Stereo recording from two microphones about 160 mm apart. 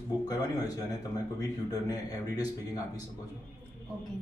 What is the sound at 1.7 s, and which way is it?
Speech, 25° left (ahead or behind).